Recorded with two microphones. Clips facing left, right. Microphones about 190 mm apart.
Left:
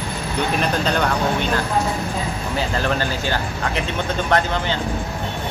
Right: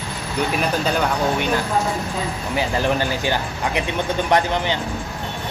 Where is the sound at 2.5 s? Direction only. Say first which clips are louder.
Right 2 dB; 15° right (ahead or behind).